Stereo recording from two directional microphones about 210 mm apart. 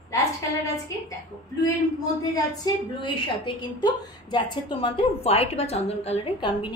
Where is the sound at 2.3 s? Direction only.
20° left (ahead or behind).